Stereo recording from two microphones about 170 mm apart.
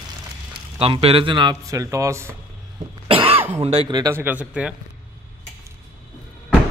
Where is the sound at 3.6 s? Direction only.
35° right (ahead or behind); by 4.7 s 10° right (ahead or behind).